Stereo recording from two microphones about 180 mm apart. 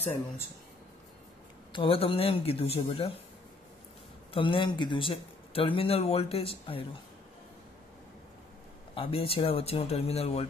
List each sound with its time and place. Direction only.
1.7 s a man's voice: 30° left (ahead or behind)
4.3 s a man's voice: 30° left (ahead or behind)
8.9 s a man's voice: 30° left (ahead or behind)